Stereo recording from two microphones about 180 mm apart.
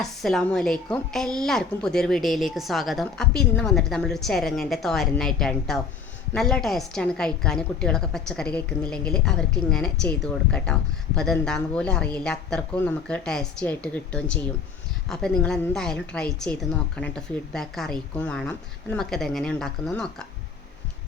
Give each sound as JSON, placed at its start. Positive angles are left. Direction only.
{"t": 0.0, "sound": "speech", "side_deg": 0}